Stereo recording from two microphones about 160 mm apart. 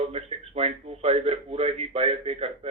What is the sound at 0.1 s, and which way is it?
Speech, 40° right (ahead or behind).